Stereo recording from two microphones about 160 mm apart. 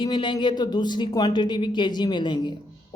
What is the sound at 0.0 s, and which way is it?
Speech, 30° left (ahead or behind).